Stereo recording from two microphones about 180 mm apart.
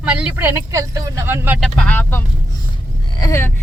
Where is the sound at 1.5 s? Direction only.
5° left (ahead or behind).